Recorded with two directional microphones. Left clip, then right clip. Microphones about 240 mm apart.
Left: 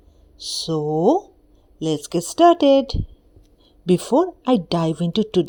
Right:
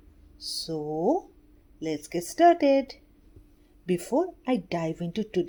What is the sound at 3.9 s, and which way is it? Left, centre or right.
Speech, left.